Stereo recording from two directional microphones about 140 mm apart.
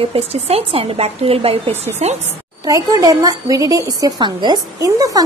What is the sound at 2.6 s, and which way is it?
A woman's voice, 25° right (ahead or behind).